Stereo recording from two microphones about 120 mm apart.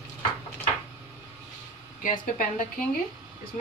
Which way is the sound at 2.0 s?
90° left.